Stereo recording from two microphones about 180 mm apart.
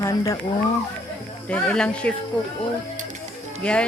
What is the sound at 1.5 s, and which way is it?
Speech, 5° left (ahead or behind).